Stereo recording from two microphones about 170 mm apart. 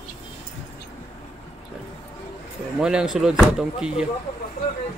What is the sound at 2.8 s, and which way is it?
Speech, 5° right (ahead or behind).